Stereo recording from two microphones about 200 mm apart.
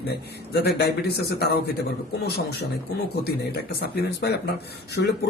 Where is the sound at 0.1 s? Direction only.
55° left (ahead or behind).